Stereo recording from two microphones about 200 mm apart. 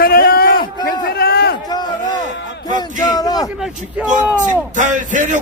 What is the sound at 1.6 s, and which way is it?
Speech, 20° left (ahead or behind).